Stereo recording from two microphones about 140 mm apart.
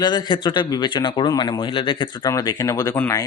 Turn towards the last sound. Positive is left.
turn(degrees=20)  # may be behind; listen again after turning